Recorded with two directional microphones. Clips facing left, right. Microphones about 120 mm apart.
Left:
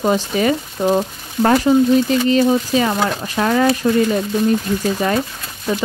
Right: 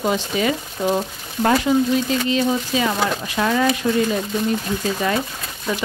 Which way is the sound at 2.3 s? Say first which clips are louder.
Left 5 dB; 40° left (ahead or behind).